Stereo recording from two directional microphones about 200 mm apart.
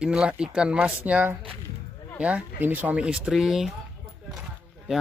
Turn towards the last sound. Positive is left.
turn(degrees=-5)  # may be behind; listen again after turning